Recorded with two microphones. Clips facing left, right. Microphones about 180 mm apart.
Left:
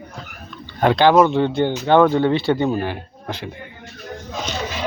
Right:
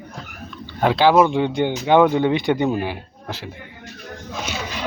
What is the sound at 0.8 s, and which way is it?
Speech, 5° right (ahead or behind).